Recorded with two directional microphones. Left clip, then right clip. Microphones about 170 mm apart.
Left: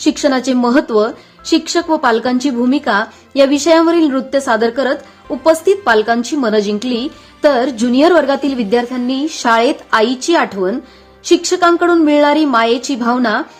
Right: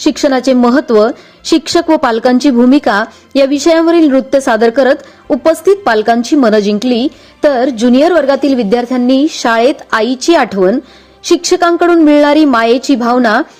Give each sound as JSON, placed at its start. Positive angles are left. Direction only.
{"t": 0.0, "sound": "a woman's voice", "side_deg": -35}